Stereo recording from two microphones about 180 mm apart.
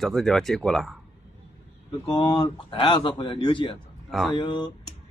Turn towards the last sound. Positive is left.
turn(degrees=25)  # may be behind; listen again after turning